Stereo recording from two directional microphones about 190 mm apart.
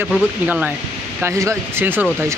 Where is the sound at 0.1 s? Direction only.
5° right (ahead or behind).